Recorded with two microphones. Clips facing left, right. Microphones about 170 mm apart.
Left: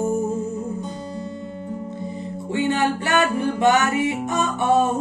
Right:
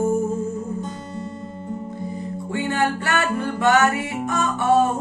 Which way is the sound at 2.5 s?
20° left (ahead or behind).